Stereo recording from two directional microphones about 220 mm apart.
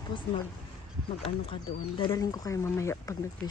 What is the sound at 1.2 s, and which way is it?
Speech, 25° left (ahead or behind).